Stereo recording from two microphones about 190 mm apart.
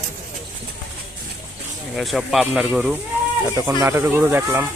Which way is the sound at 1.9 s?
Centre (ahead or behind).